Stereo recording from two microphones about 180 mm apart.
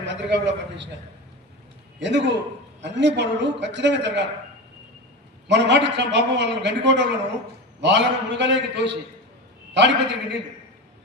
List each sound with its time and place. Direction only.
0.0 s a man's voice: 80° right
2.0 s a man's voice: 80° right
5.5 s a man's voice: 75° right (ahead or behind)